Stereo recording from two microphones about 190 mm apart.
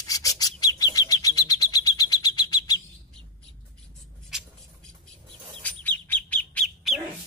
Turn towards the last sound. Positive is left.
turn(degrees=0)  # may be behind; listen again after turning